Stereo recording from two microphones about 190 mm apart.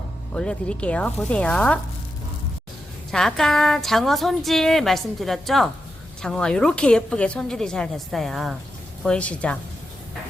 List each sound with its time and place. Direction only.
0.3 s a woman's voice: 5° left (ahead or behind)
3.1 s a woman's voice: centre (ahead or behind)